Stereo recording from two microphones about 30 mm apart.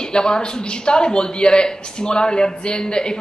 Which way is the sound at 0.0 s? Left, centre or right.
Left.